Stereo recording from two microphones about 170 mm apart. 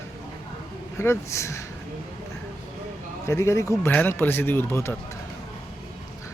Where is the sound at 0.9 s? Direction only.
15° left (ahead or behind).